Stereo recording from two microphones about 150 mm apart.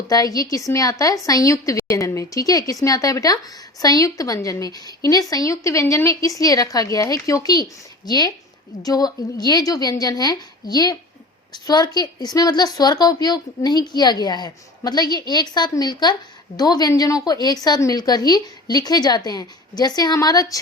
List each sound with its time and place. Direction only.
0.1 s a woman's voice: 25° left (ahead or behind)